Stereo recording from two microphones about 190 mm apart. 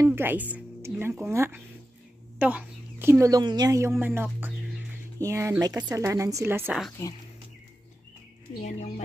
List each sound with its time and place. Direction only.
0.0 s a woman's voice: 10° right (ahead or behind)
7.0 s speech: 15° left (ahead or behind)
8.6 s speech: 40° left (ahead or behind)